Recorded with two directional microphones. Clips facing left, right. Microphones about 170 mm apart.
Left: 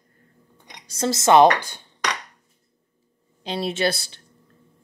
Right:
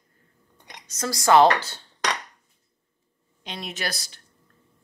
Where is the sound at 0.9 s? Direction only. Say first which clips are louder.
Left 2 dB; 25° left (ahead or behind).